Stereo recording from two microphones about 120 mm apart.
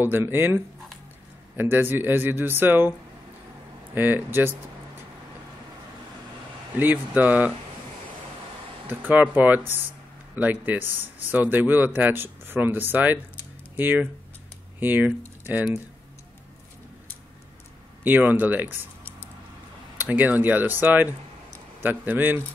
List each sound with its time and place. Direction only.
0.0 s speech: 15° right (ahead or behind)
1.6 s speech: 20° right (ahead or behind)
3.9 s speech: 15° right (ahead or behind)
6.8 s speech: 15° right (ahead or behind)
8.8 s speech: 15° right (ahead or behind)
18.0 s speech: 15° right (ahead or behind)
20.0 s speech: 15° right (ahead or behind)